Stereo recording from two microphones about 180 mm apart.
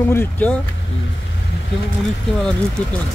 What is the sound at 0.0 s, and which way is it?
Speech, 10° left (ahead or behind).